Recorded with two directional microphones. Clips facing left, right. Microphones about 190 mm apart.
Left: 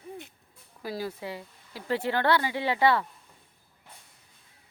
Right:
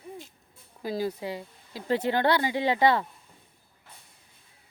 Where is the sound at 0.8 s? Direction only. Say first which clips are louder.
Right 4 dB; 20° right (ahead or behind).